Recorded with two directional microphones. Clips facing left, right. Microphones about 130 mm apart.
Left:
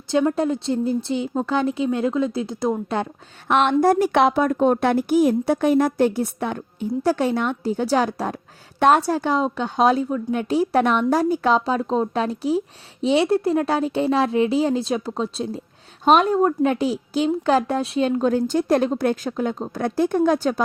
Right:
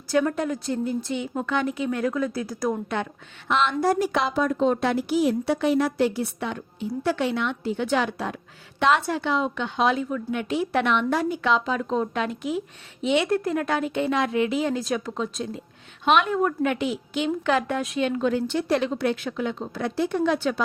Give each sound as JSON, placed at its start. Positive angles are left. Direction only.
{"t": 0.1, "sound": "a woman's voice", "side_deg": 25}
{"t": 3.5, "sound": "a woman's voice", "side_deg": 55}